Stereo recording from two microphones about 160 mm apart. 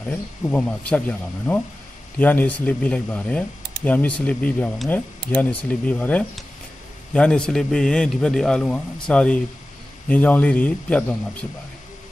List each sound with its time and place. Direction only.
0.1 s a man's voice: 10° left (ahead or behind)